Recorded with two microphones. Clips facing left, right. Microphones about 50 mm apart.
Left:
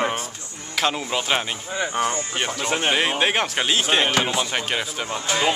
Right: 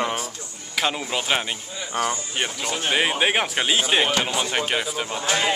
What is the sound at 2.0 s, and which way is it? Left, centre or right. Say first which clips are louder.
Speech: even; left.